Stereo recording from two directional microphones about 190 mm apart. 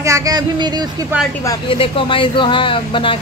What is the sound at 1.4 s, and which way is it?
Speech, 25° left (ahead or behind).